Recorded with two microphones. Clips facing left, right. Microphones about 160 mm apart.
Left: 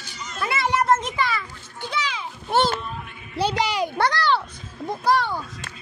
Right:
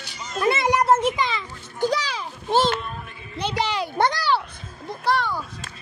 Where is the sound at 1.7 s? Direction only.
40° right (ahead or behind).